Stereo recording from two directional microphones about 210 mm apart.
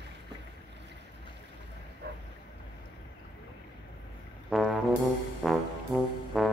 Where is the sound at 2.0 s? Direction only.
50° right (ahead or behind).